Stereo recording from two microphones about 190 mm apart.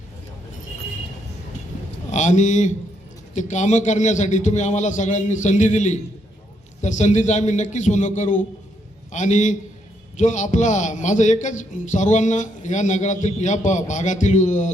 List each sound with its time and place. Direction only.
2.0 s a man's voice: 40° left (ahead or behind)